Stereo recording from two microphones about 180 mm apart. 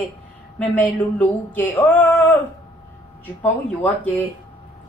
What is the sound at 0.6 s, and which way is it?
A woman's voice, 10° left (ahead or behind).